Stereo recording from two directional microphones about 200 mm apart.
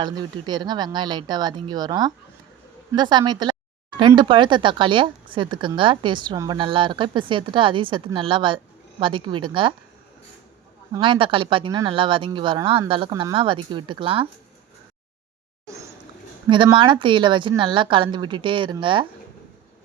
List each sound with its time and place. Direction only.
0.0 s speech: 20° right (ahead or behind)
10.9 s speech: 25° right (ahead or behind)
16.5 s speech: 25° right (ahead or behind)